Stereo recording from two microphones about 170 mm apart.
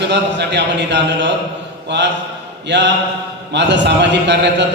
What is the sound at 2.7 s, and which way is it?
A man's voice, 90° right.